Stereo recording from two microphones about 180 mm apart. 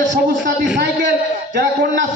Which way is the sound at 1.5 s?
70° right (ahead or behind).